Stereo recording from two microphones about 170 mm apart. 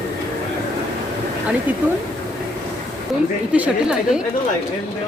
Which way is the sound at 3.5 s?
5° right (ahead or behind).